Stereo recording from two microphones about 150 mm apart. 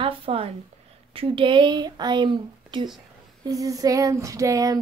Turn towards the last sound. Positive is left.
turn(degrees=-20)  # may be behind; listen again after turning